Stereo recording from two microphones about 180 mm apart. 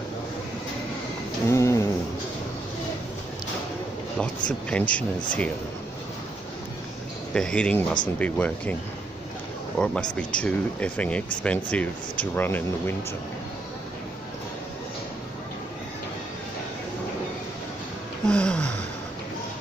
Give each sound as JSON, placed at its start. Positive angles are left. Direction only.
{"t": 1.5, "sound": "a sound", "side_deg": 15}
{"t": 4.2, "sound": "speech", "side_deg": 5}
{"t": 7.3, "sound": "speech", "side_deg": 5}
{"t": 9.8, "sound": "speech", "side_deg": 5}
{"t": 18.2, "sound": "gasp", "side_deg": 5}